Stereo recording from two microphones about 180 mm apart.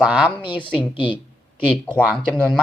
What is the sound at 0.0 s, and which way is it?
Speech, 5° right (ahead or behind).